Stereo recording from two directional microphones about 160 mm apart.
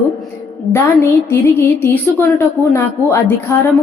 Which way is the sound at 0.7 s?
15° left (ahead or behind).